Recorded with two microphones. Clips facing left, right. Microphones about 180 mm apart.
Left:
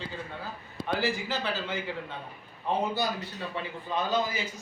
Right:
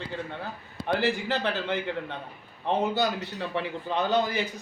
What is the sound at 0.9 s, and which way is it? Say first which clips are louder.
A man's voice: right 3 dB; 60° right (ahead or behind).